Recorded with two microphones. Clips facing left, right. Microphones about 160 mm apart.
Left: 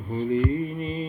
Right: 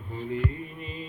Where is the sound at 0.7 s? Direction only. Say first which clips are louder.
Left 9 dB; 40° left (ahead or behind).